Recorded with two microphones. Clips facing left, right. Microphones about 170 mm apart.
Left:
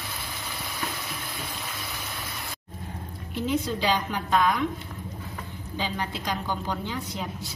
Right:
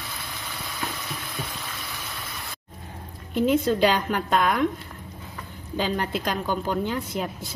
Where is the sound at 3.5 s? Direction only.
55° right (ahead or behind).